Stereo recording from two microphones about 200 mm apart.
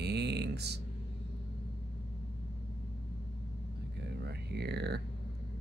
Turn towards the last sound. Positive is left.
turn(degrees=-55)  # may be behind; listen again after turning